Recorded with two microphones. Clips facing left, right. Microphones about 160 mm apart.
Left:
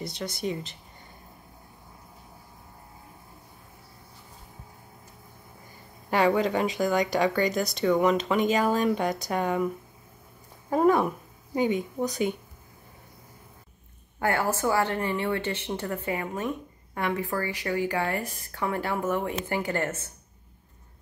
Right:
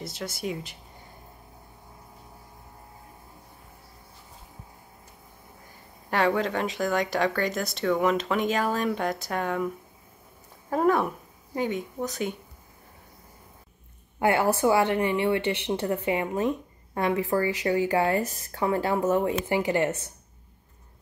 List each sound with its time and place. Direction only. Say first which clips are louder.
0.0 s speech: left 1 dB; 5° right (ahead or behind)
6.0 s speech: left 2 dB; centre (ahead or behind)
10.7 s speech: left 1 dB; 5° left (ahead or behind)
14.2 s a woman's voice: right 4 dB; 20° right (ahead or behind)
16.3 s a sound: right 5 dB; 35° right (ahead or behind)
17.1 s speech: right 6 dB; 20° right (ahead or behind)
18.8 s speech: right 4 dB; 35° right (ahead or behind)
19.4 s a woman's voice: right 4 dB; 20° right (ahead or behind)